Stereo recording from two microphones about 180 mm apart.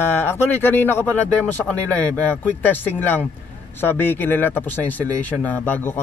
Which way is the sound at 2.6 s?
10° left (ahead or behind).